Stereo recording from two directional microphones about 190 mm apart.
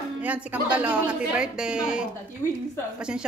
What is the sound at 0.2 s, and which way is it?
A woman's voice, 10° right (ahead or behind).